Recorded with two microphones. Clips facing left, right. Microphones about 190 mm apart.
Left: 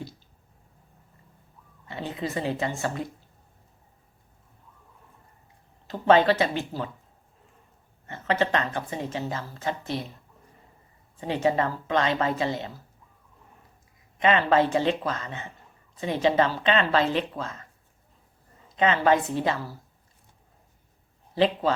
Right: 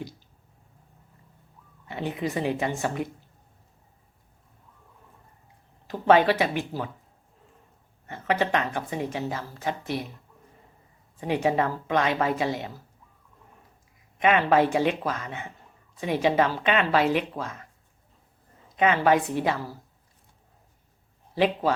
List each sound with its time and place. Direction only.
1.9 s a woman's voice: 15° right (ahead or behind)
5.9 s a woman's voice: 10° right (ahead or behind)
8.0 s a woman's voice: 10° right (ahead or behind)
11.3 s a woman's voice: 15° right (ahead or behind)
14.2 s a woman's voice: 10° right (ahead or behind)
18.8 s a woman's voice: 10° right (ahead or behind)
21.3 s a woman's voice: 10° right (ahead or behind)